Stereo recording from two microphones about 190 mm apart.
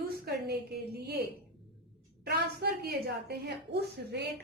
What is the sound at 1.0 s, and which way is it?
Speech, 60° right (ahead or behind).